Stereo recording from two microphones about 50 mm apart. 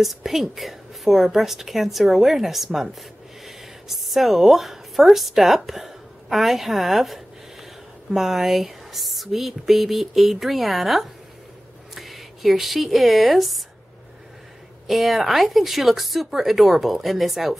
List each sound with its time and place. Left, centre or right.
0.0 s speech: centre
14.9 s speech: centre